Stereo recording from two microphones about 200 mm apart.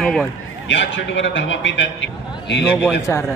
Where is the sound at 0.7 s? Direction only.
65° left (ahead or behind).